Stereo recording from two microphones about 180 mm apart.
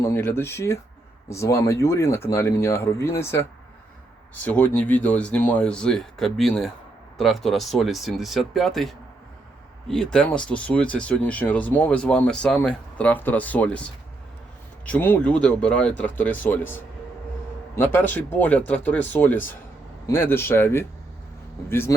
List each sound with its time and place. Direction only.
0.0 s speech: 15° left (ahead or behind)
4.4 s speech: 10° left (ahead or behind)